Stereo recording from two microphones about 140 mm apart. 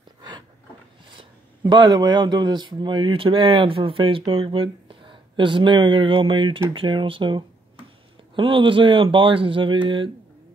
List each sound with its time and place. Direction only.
1.1 s speech: 35° right (ahead or behind)